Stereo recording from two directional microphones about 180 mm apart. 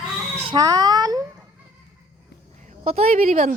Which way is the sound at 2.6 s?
35° right (ahead or behind).